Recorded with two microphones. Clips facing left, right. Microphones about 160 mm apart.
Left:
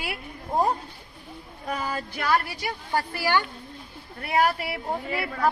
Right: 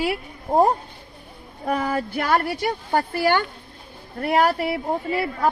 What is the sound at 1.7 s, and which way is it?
Speech, 60° right (ahead or behind).